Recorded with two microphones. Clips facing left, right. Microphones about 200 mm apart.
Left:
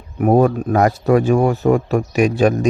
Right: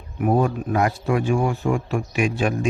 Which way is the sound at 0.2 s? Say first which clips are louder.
Left 6 dB; 45° left (ahead or behind).